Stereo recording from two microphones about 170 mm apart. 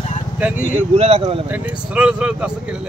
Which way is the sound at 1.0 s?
35° right (ahead or behind).